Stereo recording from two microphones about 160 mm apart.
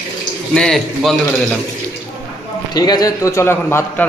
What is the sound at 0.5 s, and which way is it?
Speech, 5° left (ahead or behind).